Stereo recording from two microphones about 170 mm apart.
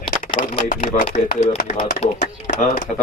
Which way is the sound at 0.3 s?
45° left (ahead or behind).